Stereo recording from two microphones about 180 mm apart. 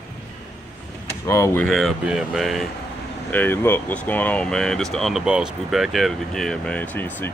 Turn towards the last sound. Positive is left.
turn(degrees=10)  # may be behind; listen again after turning